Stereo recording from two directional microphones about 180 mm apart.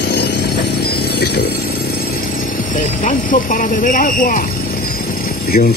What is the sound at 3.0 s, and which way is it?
Speech, 50° left (ahead or behind).